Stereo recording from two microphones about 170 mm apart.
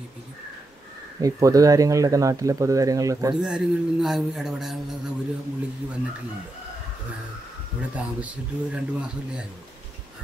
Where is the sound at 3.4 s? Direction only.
5° right (ahead or behind).